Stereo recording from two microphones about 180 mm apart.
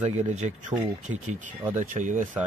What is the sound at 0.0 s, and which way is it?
A man's voice, 40° right (ahead or behind).